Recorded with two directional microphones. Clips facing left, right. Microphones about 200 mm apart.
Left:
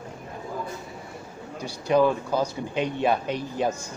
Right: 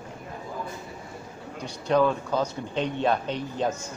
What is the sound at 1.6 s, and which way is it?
Speech, 10° left (ahead or behind).